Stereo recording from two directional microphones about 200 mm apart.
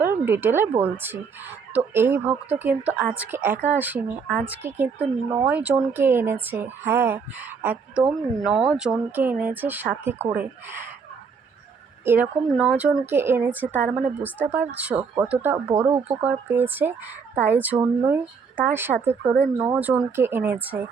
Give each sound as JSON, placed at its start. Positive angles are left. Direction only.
{"t": 0.0, "sound": "a woman's voice", "side_deg": -10}
{"t": 12.0, "sound": "speech", "side_deg": -10}
{"t": 15.5, "sound": "speech", "side_deg": -20}
{"t": 16.0, "sound": "speech", "side_deg": -10}